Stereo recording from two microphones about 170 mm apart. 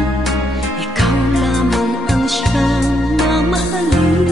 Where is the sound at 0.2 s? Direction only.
Centre (ahead or behind).